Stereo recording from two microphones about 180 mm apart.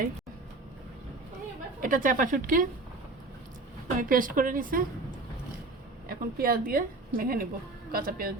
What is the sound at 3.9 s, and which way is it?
Speech, 50° right (ahead or behind).